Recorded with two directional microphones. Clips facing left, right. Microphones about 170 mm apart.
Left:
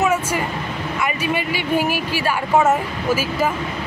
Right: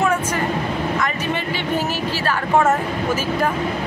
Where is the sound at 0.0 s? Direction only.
5° left (ahead or behind).